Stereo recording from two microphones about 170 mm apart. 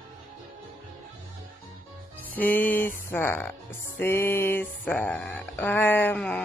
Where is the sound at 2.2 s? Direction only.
10° left (ahead or behind).